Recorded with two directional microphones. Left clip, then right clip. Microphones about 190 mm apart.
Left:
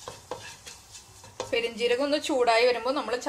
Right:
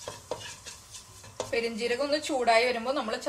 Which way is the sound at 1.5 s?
35° left (ahead or behind).